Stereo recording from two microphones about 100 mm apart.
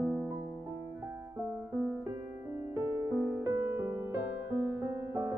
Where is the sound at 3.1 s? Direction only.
30° right (ahead or behind).